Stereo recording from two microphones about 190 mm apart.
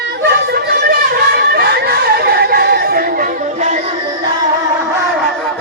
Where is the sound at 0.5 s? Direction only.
55° right (ahead or behind).